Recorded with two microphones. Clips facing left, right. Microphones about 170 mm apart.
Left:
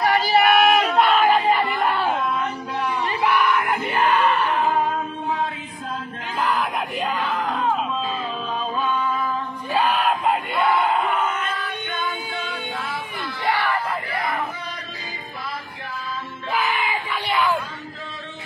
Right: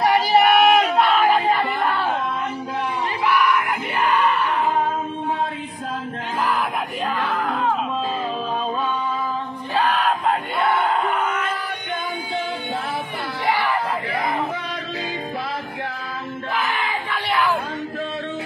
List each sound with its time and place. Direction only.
0.1 s child singing: 15° right (ahead or behind)
0.9 s crowd: centre (ahead or behind)
3.3 s crowd: 30° left (ahead or behind)
9.8 s yell: 10° left (ahead or behind)
10.6 s crowd: centre (ahead or behind)
16.6 s crowd: centre (ahead or behind)